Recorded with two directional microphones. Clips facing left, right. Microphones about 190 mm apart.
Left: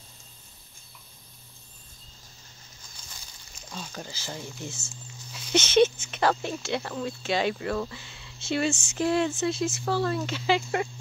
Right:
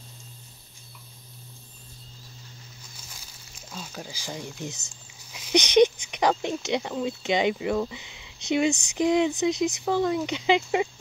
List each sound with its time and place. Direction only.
3.7 s speech: 5° right (ahead or behind)